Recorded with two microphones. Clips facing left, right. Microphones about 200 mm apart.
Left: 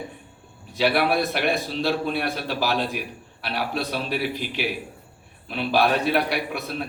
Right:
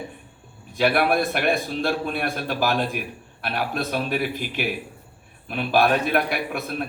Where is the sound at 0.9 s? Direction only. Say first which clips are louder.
Right 1 dB; 50° right (ahead or behind).